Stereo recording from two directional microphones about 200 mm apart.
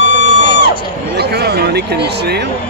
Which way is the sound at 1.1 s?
55° right (ahead or behind).